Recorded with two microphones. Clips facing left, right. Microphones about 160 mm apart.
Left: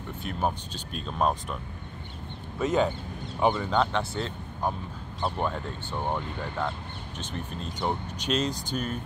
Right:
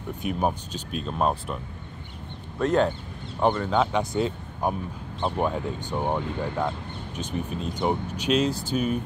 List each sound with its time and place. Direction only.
0.2 s speech: 10° right (ahead or behind)
2.6 s speech: centre (ahead or behind)
4.0 s speech: 15° right (ahead or behind)